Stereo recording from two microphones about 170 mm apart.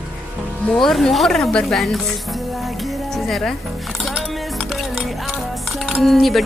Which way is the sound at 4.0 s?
Centre (ahead or behind).